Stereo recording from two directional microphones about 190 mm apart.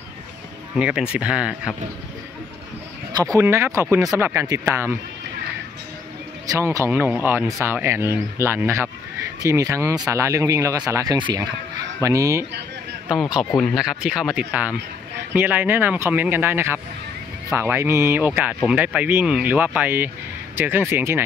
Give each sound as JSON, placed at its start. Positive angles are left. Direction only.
{"t": 0.7, "sound": "speech", "side_deg": -5}
{"t": 3.1, "sound": "speech", "side_deg": -20}
{"t": 6.4, "sound": "speech", "side_deg": -15}
{"t": 13.1, "sound": "speech", "side_deg": 0}